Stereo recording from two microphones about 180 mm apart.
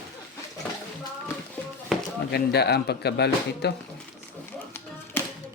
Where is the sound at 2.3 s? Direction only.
65° left (ahead or behind).